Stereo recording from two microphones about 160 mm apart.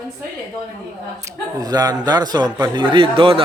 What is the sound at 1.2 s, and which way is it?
A man's voice, 20° right (ahead or behind).